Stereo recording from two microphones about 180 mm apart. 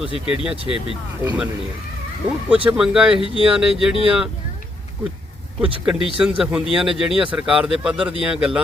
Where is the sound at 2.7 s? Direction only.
5° right (ahead or behind).